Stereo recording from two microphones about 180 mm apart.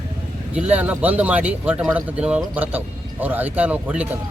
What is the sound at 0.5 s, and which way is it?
A man's voice, 10° right (ahead or behind).